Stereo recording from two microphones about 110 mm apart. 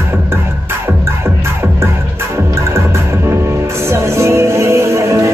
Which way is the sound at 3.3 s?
25° right (ahead or behind).